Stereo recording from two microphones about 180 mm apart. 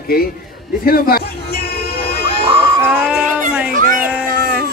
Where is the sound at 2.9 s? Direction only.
5° right (ahead or behind).